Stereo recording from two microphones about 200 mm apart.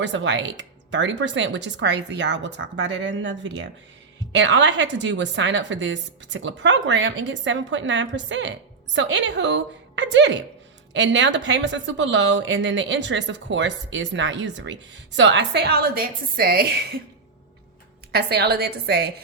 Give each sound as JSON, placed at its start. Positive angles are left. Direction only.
{"t": 0.0, "sound": "a woman's voice", "side_deg": -65}
{"t": 18.1, "sound": "a woman's voice", "side_deg": -55}